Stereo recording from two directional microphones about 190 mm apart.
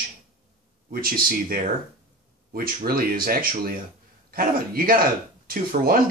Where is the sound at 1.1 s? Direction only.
50° right (ahead or behind).